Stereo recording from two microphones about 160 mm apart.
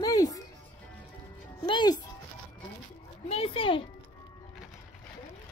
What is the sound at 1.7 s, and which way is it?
Music, 30° left (ahead or behind).